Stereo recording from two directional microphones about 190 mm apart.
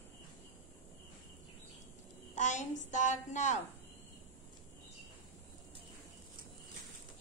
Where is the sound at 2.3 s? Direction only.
40° left (ahead or behind).